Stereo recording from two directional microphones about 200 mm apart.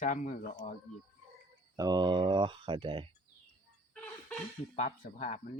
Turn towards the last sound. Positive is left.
turn(degrees=35)  # may be behind; listen again after turning